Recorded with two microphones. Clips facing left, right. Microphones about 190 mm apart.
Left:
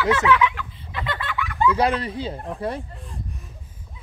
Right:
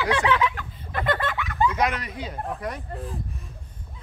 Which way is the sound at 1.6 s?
30° left (ahead or behind).